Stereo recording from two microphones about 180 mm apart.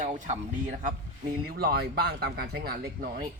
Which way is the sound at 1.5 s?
60° right (ahead or behind).